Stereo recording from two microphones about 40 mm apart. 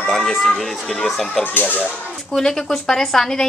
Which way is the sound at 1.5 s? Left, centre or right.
Left.